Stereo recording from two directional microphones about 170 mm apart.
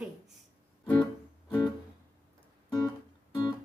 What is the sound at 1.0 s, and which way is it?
Music, 20° left (ahead or behind).